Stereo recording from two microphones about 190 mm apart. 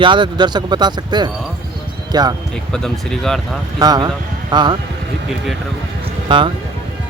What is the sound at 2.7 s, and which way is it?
Speech, 5° left (ahead or behind).